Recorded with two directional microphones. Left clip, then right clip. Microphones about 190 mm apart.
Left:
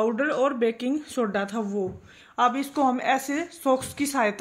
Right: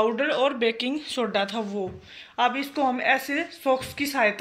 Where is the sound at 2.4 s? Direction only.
65° left (ahead or behind).